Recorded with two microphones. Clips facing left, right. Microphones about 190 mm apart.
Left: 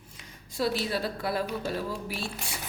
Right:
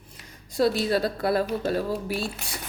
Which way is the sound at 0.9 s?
40° right (ahead or behind).